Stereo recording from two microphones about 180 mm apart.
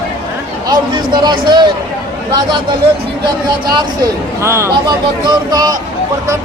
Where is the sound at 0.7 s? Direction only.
25° right (ahead or behind).